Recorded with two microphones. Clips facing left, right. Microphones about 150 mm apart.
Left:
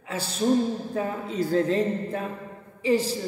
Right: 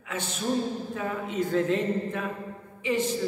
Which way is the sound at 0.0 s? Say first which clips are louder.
Left 5 dB; 35° left (ahead or behind).